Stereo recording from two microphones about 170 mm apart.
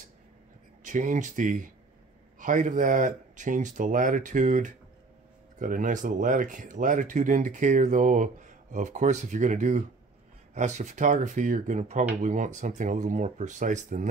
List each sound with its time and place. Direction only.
0.8 s speech: 50° right (ahead or behind)